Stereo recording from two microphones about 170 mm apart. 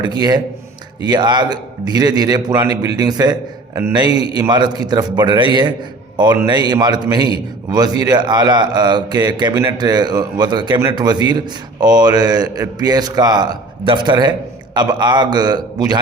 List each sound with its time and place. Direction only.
0.0 s a man's voice: 25° right (ahead or behind)